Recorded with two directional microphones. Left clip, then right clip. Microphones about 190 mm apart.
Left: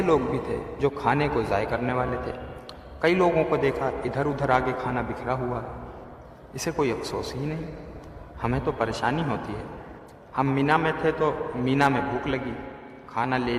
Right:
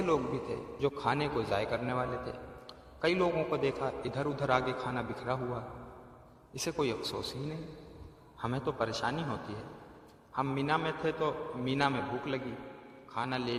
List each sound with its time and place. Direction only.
0.0 s a man's voice: 20° right (ahead or behind)
8.4 s a man's voice: 15° right (ahead or behind)